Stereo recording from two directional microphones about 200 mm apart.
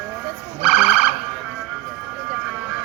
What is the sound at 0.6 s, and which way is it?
Siren, centre (ahead or behind).